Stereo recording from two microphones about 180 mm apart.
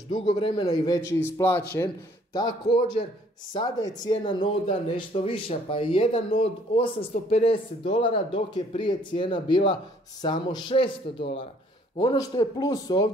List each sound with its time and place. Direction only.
0.1 s speech: 30° left (ahead or behind)
0.9 s a man's voice: 15° left (ahead or behind)
3.5 s speech: 20° left (ahead or behind)